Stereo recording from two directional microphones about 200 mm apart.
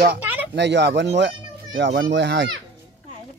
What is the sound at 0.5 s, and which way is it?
Speech, 60° right (ahead or behind).